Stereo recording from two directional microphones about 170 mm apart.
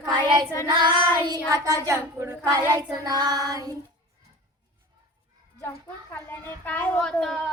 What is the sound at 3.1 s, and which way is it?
Child singing, 25° right (ahead or behind).